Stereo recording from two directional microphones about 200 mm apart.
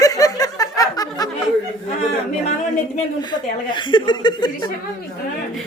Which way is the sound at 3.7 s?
25° left (ahead or behind).